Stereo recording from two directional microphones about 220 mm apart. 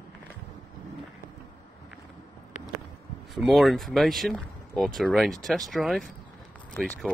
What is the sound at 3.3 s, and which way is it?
Speech, centre (ahead or behind).